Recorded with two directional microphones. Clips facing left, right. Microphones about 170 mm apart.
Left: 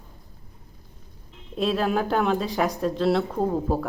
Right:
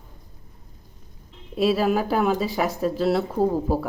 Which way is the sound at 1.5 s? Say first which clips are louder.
Right 3 dB; 5° right (ahead or behind).